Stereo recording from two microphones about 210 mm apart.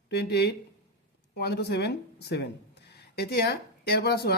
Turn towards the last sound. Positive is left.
turn(degrees=50)  # may be behind; listen again after turning